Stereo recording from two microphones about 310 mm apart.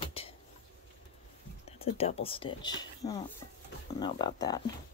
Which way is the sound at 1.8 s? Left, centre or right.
Centre.